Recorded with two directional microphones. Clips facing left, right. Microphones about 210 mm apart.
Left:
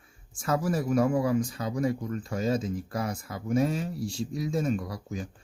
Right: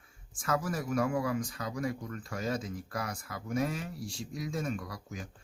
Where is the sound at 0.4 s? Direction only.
30° left (ahead or behind).